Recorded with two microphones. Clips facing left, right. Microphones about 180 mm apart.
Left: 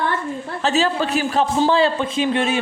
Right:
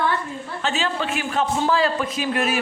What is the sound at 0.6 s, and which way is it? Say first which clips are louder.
A woman's voice: left 6 dB; 35° left (ahead or behind).